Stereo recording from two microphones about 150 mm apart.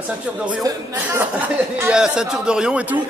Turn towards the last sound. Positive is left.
turn(degrees=-10)  # may be behind; listen again after turning